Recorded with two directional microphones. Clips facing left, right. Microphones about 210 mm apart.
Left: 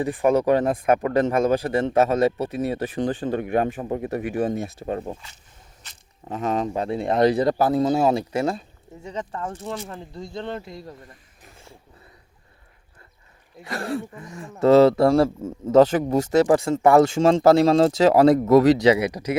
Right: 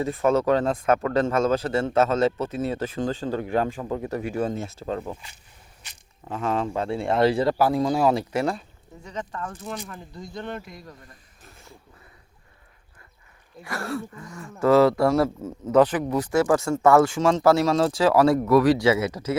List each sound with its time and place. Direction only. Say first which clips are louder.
0.0 s speech: left 2 dB; 15° left (ahead or behind)
6.2 s speech: left 2 dB; 20° left (ahead or behind)
13.7 s speech: left 2 dB; 20° left (ahead or behind)